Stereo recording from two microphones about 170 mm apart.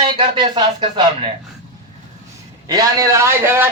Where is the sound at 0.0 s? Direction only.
25° right (ahead or behind).